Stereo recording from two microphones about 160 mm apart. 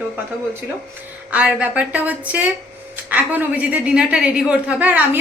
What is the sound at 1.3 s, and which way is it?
A woman's voice, 10° right (ahead or behind).